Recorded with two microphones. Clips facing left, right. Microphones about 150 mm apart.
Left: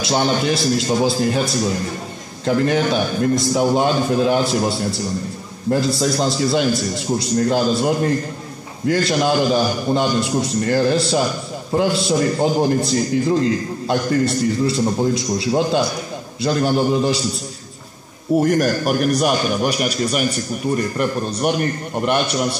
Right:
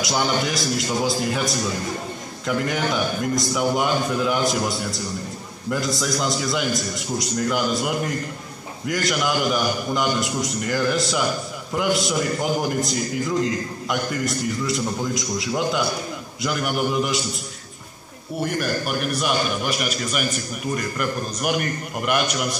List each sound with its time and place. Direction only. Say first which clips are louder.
0.0 s a man's voice: left 4 dB; 25° left (ahead or behind)
18.3 s a man's voice: left 9 dB; 45° left (ahead or behind)